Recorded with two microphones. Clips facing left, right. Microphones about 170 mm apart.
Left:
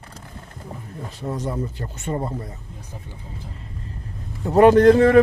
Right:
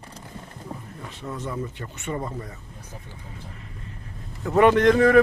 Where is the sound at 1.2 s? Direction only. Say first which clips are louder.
Left 4 dB; 40° left (ahead or behind).